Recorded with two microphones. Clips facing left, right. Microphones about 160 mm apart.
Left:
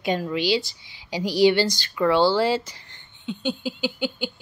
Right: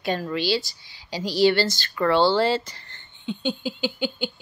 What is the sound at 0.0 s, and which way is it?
A woman's voice, 15° left (ahead or behind).